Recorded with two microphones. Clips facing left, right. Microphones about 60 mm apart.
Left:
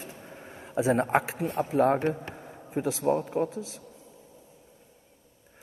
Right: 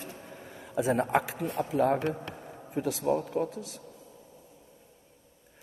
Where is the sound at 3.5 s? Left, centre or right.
Right.